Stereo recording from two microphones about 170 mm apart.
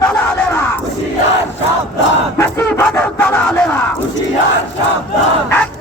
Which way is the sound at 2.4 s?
15° left (ahead or behind).